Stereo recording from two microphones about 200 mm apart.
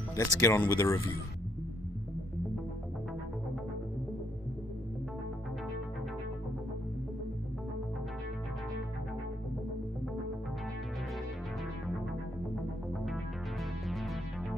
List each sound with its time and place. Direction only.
0.1 s speech: 15° left (ahead or behind)
12.9 s music: centre (ahead or behind)